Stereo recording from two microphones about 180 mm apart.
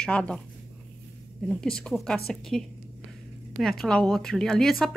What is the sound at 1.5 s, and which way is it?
Speech, 5° left (ahead or behind).